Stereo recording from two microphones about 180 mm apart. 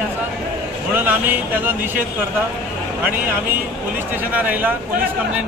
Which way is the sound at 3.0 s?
10° right (ahead or behind).